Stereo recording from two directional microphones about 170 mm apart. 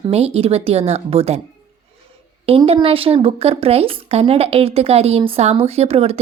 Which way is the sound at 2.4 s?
35° right (ahead or behind).